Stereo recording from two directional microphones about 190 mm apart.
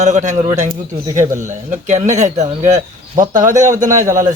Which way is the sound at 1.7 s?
40° right (ahead or behind).